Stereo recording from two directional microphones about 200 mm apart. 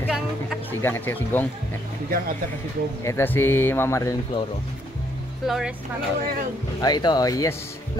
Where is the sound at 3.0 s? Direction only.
10° left (ahead or behind).